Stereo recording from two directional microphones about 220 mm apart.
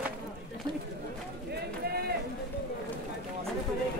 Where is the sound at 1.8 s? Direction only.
45° right (ahead or behind).